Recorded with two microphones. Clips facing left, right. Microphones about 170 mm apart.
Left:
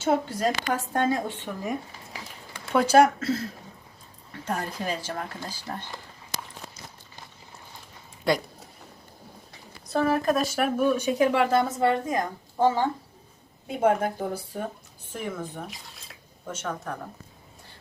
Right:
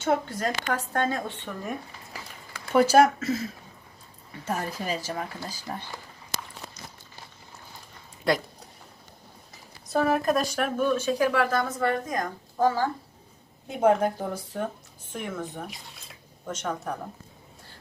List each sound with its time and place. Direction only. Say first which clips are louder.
0.3 s speech: left 2 dB; 15° left (ahead or behind)
2.7 s speech: even; 10° right (ahead or behind)
8.3 s speech: even; centre (ahead or behind)
9.5 s speech: even; 5° right (ahead or behind); by 12.9 s 25° left (ahead or behind)
13.7 s speech: right 1 dB; 5° left (ahead or behind)